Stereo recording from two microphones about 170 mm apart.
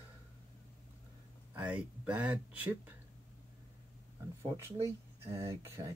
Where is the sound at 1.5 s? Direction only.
10° right (ahead or behind).